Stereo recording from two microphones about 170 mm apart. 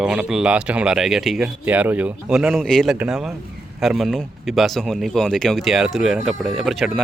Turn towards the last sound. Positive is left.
turn(degrees=0)  # may be behind; listen again after turning